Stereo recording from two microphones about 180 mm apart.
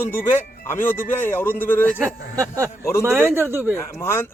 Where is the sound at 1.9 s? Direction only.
15° right (ahead or behind).